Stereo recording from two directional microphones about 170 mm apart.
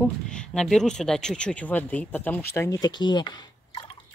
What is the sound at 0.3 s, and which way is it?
Speech, 5° left (ahead or behind).